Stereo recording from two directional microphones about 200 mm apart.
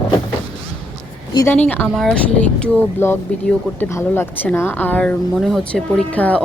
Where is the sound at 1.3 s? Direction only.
15° left (ahead or behind).